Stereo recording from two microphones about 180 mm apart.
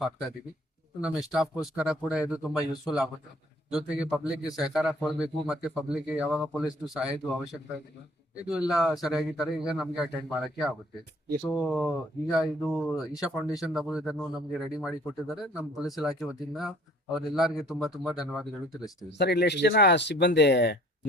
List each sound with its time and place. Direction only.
1.0 s speech: 5° right (ahead or behind)
8.4 s speech: 5° right (ahead or behind)
18.7 s speech: 20° left (ahead or behind)
19.1 s speech: 70° left (ahead or behind)